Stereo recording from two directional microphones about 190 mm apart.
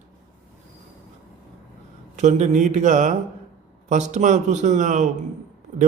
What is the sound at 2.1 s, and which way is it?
A man's voice, 40° right (ahead or behind).